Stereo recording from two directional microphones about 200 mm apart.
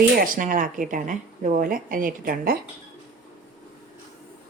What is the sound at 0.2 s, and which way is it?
A woman's voice, 45° right (ahead or behind).